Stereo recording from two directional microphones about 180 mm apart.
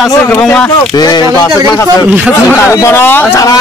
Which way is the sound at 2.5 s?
15° left (ahead or behind).